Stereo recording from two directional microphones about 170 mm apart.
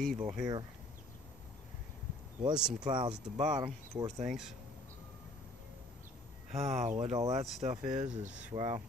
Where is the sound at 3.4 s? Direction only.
45° right (ahead or behind).